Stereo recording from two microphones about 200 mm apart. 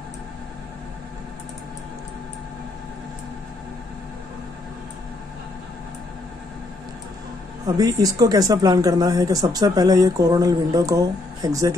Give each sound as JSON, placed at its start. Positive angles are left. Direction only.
{"t": 7.6, "sound": "speech", "side_deg": -20}